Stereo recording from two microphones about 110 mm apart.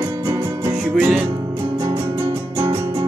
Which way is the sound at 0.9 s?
15° right (ahead or behind).